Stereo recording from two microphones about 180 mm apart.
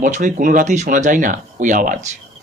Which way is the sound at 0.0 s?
45° right (ahead or behind).